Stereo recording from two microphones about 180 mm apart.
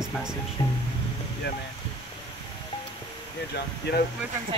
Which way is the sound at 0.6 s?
25° left (ahead or behind).